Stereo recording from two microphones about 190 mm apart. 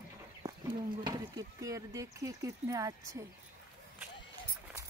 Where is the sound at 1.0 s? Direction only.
20° right (ahead or behind).